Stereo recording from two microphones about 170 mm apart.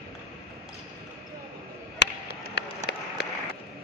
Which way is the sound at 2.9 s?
70° left (ahead or behind).